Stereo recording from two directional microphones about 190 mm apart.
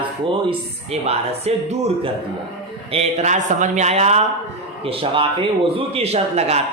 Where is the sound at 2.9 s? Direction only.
35° right (ahead or behind).